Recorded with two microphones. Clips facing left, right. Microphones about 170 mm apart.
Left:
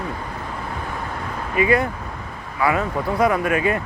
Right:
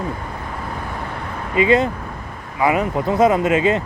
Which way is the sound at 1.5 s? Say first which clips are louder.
Right 3 dB; 20° right (ahead or behind).